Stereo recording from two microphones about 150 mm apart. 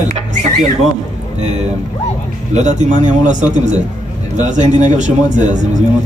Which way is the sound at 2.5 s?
55° right (ahead or behind).